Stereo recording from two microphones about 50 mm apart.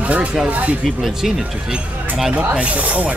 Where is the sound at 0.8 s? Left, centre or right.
Centre.